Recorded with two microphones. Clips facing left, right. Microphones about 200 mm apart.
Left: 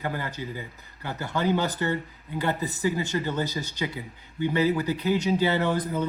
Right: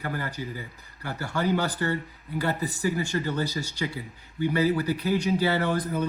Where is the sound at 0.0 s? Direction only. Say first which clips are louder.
Left 1 dB; 20° left (ahead or behind).